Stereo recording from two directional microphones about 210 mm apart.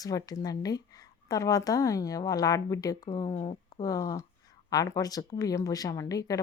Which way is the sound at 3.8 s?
15° left (ahead or behind).